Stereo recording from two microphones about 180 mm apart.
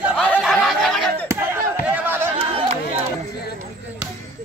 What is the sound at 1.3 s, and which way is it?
Speech, 15° right (ahead or behind).